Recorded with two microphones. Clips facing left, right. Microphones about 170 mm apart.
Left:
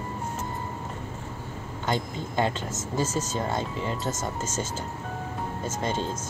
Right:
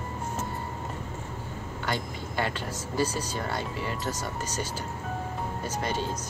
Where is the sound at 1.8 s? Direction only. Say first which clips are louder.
Left 4 dB; 20° left (ahead or behind).